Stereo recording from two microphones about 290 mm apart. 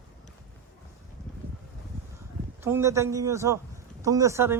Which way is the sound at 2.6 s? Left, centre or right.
Centre.